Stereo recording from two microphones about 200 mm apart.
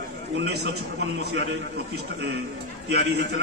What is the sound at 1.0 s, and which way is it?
Speech, 55° right (ahead or behind).